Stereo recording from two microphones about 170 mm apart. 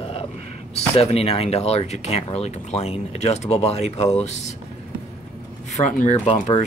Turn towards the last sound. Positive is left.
turn(degrees=40)  # may be behind; listen again after turning